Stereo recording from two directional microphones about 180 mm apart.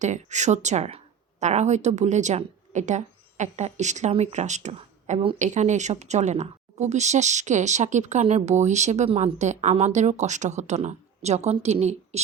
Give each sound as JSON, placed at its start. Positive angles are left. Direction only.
{"t": 0.0, "sound": "speech", "side_deg": -40}